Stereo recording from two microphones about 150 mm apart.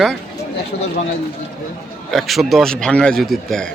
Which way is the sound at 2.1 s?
Centre (ahead or behind).